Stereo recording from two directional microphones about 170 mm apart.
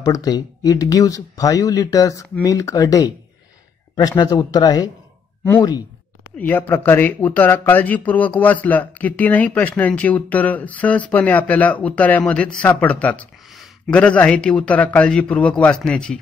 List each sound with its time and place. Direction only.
0.0 s speech: 20° left (ahead or behind)
6.3 s speech: 10° left (ahead or behind)